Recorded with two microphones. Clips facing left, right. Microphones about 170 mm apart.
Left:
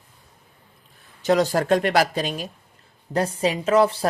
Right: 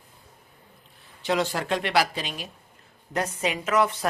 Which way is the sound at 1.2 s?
40° left (ahead or behind).